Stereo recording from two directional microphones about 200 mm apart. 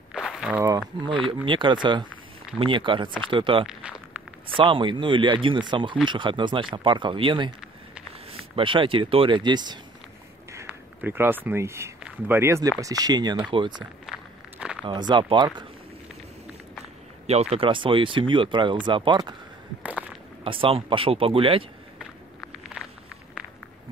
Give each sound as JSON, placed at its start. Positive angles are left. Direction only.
{"t": 0.1, "sound": "walk", "side_deg": -5}
{"t": 1.0, "sound": "speech", "side_deg": -25}
{"t": 3.6, "sound": "speech", "side_deg": -5}
{"t": 4.6, "sound": "speech", "side_deg": -25}
{"t": 10.5, "sound": "speech", "side_deg": -10}
{"t": 14.0, "sound": "walk", "side_deg": -5}
{"t": 14.9, "sound": "speech", "side_deg": -20}
{"t": 17.3, "sound": "speech", "side_deg": -30}
{"t": 19.8, "sound": "a sound", "side_deg": -5}
{"t": 20.4, "sound": "speech", "side_deg": -25}